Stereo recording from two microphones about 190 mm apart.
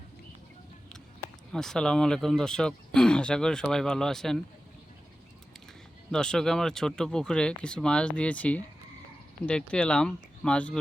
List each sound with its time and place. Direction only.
1.5 s speech: 5° left (ahead or behind)
6.1 s speech: 5° left (ahead or behind)